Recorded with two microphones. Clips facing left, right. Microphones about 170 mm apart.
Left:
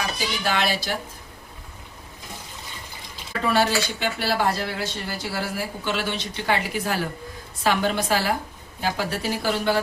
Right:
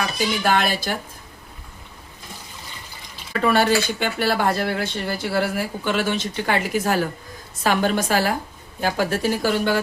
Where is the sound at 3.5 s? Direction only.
55° right (ahead or behind).